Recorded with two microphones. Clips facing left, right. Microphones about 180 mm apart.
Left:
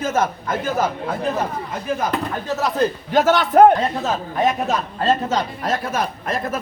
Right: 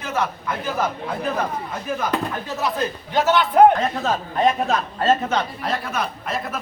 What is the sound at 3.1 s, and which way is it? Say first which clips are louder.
Speech: left 2 dB; 45° left (ahead or behind).